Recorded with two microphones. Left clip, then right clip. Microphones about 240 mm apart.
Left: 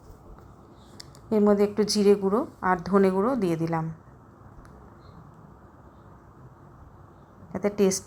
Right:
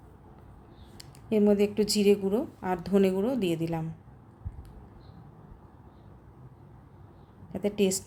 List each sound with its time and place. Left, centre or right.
0.9 s a woman's voice: centre
7.5 s a woman's voice: centre